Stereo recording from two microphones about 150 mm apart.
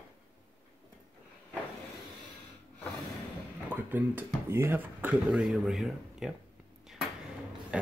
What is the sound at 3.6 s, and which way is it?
Speech, 10° right (ahead or behind).